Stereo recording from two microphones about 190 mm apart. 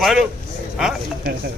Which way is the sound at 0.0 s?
Centre (ahead or behind).